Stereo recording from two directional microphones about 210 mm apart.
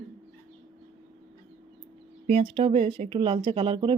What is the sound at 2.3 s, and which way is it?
Speech, 25° right (ahead or behind).